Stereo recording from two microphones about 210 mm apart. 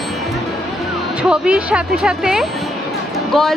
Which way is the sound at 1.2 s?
5° right (ahead or behind).